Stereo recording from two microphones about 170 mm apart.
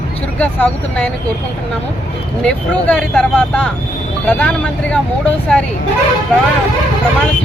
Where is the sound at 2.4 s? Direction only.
5° left (ahead or behind).